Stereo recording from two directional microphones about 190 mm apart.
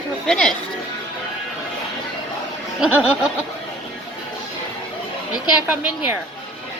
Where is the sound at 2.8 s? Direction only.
5° right (ahead or behind).